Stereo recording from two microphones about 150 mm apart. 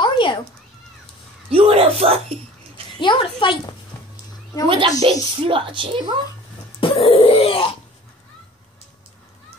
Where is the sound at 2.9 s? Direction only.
30° left (ahead or behind).